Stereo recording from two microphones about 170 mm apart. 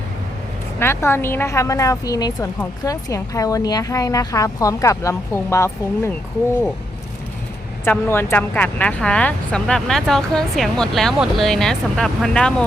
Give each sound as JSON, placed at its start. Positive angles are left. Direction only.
{"t": 0.8, "sound": "a woman's voice", "side_deg": 15}
{"t": 7.9, "sound": "speech", "side_deg": 15}